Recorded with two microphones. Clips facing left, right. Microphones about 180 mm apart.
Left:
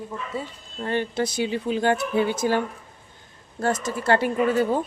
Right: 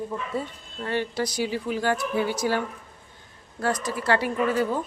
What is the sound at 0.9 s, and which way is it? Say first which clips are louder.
Speech: left 2 dB; 25° left (ahead or behind).